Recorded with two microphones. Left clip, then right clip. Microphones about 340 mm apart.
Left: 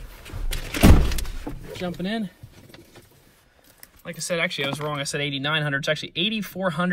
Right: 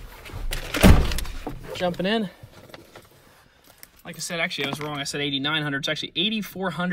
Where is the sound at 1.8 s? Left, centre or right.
Centre.